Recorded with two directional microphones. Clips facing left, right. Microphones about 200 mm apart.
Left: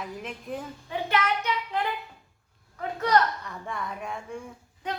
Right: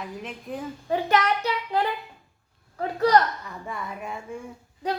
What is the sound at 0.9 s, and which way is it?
Speech, 40° right (ahead or behind).